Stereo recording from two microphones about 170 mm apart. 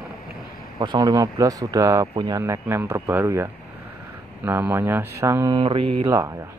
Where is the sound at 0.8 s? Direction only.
25° right (ahead or behind).